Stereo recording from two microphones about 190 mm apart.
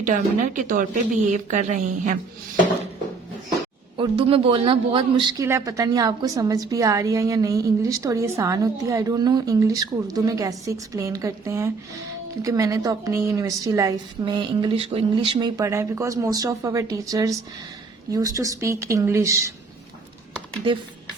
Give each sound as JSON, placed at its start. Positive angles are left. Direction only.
{"t": 0.0, "sound": "a woman's voice", "side_deg": -40}
{"t": 3.9, "sound": "a man's voice", "side_deg": -25}